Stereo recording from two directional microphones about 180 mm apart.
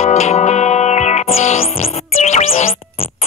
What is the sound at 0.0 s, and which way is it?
Music, 40° left (ahead or behind).